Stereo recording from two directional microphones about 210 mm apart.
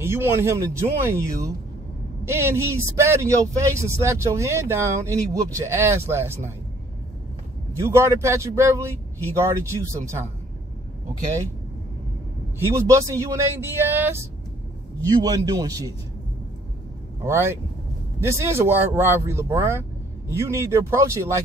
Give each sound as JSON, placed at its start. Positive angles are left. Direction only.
{"t": 0.0, "sound": "a man's voice", "side_deg": -10}
{"t": 7.7, "sound": "a man's voice", "side_deg": -15}
{"t": 12.5, "sound": "a man's voice", "side_deg": -10}
{"t": 17.2, "sound": "a man's voice", "side_deg": -10}